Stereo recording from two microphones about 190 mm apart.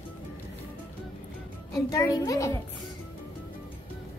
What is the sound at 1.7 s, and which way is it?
Speech, 15° left (ahead or behind).